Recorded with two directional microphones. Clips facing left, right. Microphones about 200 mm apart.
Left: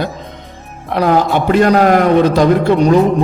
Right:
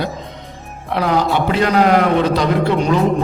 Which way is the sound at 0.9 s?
45° left (ahead or behind).